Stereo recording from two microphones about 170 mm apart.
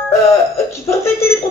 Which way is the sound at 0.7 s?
15° left (ahead or behind).